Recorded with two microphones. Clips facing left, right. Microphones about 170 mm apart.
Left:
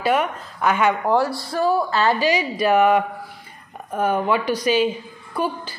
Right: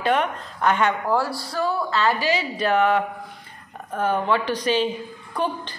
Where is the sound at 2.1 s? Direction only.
15° left (ahead or behind).